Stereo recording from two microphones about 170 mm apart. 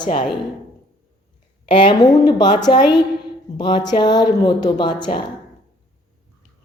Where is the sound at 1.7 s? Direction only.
30° left (ahead or behind).